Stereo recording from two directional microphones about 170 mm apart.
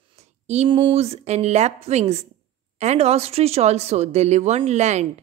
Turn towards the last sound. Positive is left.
turn(degrees=-40)  # may be behind; listen again after turning